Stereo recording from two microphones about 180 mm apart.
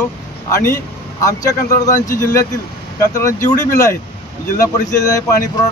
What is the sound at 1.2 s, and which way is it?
Speech, 20° left (ahead or behind).